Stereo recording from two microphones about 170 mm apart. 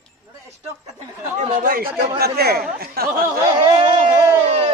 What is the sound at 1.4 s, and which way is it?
Speech, 50° right (ahead or behind).